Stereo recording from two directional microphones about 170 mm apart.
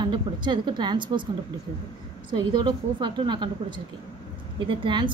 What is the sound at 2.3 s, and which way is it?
A woman's voice, 25° right (ahead or behind).